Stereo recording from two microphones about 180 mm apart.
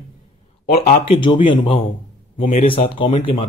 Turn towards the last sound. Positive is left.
turn(degrees=30)  # may be behind; listen again after turning